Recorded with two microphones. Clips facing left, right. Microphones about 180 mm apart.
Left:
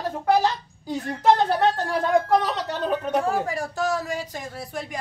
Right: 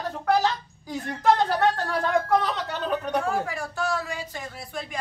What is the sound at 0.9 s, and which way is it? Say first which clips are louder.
Speech: left 2 dB; 25° left (ahead or behind).